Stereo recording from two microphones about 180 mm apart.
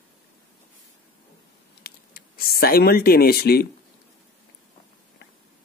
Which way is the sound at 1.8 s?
55° left (ahead or behind).